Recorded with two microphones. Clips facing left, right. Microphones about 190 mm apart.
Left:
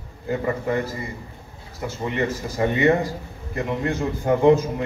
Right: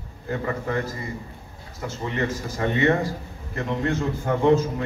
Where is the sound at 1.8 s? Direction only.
10° left (ahead or behind).